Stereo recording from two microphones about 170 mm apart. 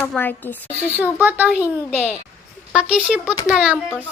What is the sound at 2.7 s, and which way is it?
Speech, 5° right (ahead or behind).